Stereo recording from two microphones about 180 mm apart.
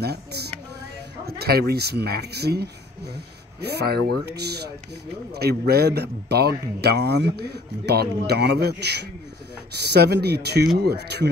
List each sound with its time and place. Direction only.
0.0 s speech: 65° right (ahead or behind)